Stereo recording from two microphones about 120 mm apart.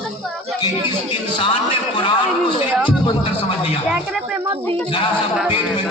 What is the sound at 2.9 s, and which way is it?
Music, 45° left (ahead or behind).